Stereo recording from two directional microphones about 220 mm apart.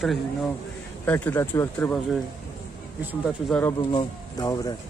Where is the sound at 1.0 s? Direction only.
5° left (ahead or behind).